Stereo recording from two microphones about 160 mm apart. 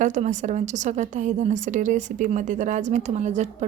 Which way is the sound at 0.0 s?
50° right (ahead or behind).